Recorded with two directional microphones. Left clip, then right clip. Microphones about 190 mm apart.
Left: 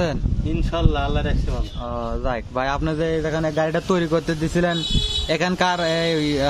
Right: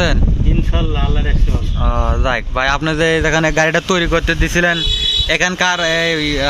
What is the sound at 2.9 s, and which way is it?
Speech, 10° right (ahead or behind).